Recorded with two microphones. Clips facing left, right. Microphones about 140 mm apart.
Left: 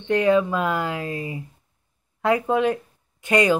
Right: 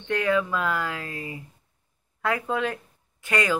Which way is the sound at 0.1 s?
25° left (ahead or behind).